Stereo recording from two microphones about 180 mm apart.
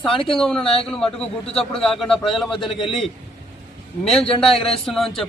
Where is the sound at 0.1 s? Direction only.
30° left (ahead or behind).